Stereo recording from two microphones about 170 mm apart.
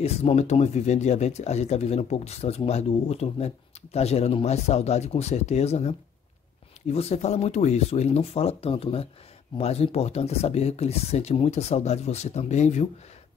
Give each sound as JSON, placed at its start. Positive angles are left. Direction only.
{"t": 0.0, "sound": "speech", "side_deg": 35}